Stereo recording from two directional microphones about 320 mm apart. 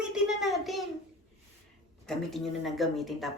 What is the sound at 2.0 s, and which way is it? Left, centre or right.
A woman's voice, centre.